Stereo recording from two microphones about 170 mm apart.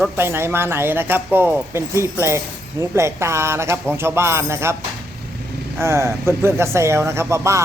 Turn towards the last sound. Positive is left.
turn(degrees=-15)  # may be behind; listen again after turning